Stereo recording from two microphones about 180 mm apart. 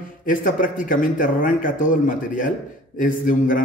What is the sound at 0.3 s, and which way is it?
A man's voice, 50° left (ahead or behind).